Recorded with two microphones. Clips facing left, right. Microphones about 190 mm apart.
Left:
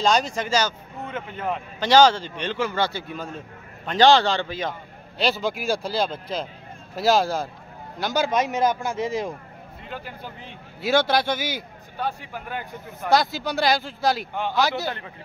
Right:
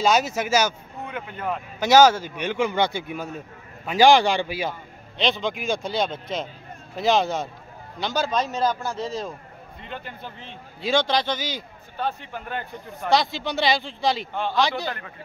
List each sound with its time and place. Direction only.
0.0 s a man's voice: 5° right (ahead or behind)
5.1 s a man's voice: 5° left (ahead or behind)